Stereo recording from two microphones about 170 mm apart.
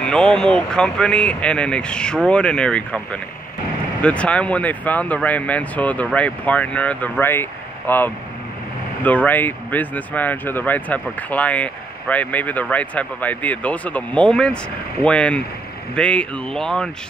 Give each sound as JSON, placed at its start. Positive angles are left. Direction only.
{"t": 0.0, "sound": "speech", "side_deg": 5}